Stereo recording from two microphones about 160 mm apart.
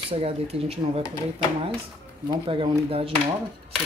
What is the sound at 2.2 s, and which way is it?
Speech, 35° right (ahead or behind).